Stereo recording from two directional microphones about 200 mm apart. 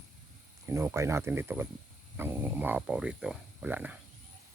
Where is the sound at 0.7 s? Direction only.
15° right (ahead or behind).